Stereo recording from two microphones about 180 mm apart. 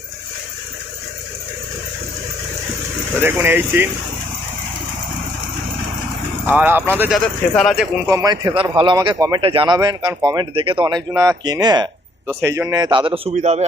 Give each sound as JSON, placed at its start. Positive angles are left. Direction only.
{"t": 3.2, "sound": "speech", "side_deg": -10}
{"t": 6.5, "sound": "speech", "side_deg": -10}
{"t": 7.5, "sound": "speech", "side_deg": 0}
{"t": 8.1, "sound": "speech", "side_deg": -20}
{"t": 13.3, "sound": "a man's voice", "side_deg": -40}